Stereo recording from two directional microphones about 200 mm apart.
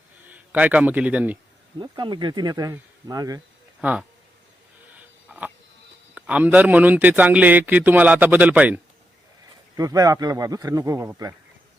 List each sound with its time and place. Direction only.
0.3 s a man's voice: 5° right (ahead or behind)
1.8 s speech: 20° right (ahead or behind)
3.8 s speech: 5° right (ahead or behind)
4.9 s a sound: 5° right (ahead or behind)
6.1 s a man's voice: 5° right (ahead or behind)
9.7 s a man's voice: 15° right (ahead or behind)